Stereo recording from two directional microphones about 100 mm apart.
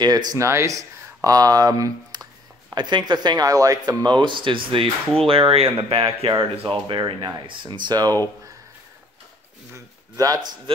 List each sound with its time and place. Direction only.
0.0 s speech: 40° right (ahead or behind)
4.0 s speech: 50° right (ahead or behind)
7.0 s speech: 50° right (ahead or behind)
9.7 s speech: 30° right (ahead or behind)